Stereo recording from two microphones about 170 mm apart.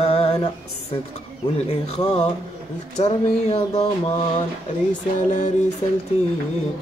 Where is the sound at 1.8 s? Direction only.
40° left (ahead or behind).